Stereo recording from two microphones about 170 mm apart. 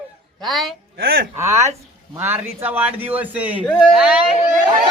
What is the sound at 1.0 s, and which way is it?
Speech, 65° right (ahead or behind).